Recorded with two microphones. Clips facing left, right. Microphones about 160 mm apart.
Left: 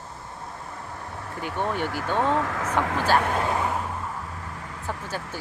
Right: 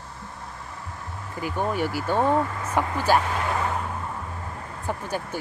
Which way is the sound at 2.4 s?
90° left.